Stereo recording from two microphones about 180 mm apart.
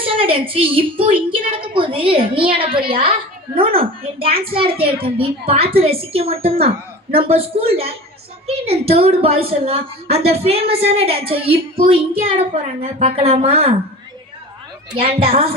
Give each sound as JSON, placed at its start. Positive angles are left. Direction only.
{"t": 0.0, "sound": "a woman's voice", "side_deg": -30}
{"t": 13.0, "sound": "a woman's voice", "side_deg": -35}
{"t": 14.9, "sound": "a woman's voice", "side_deg": -30}